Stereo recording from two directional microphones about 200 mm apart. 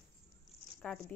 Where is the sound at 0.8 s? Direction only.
5° left (ahead or behind).